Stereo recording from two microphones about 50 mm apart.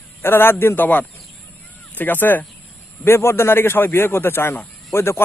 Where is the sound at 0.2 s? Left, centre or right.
Left.